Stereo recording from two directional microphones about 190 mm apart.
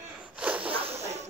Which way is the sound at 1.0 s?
35° right (ahead or behind).